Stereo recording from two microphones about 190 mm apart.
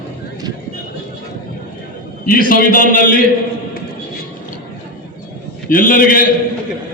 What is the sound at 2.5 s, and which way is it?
Speech, 45° left (ahead or behind).